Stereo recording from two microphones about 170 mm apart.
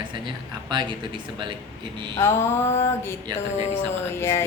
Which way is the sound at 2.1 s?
15° left (ahead or behind).